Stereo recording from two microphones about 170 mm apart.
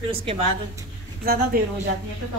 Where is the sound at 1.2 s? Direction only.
65° right (ahead or behind).